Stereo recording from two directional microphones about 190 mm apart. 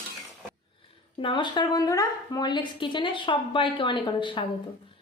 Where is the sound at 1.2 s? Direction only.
25° left (ahead or behind).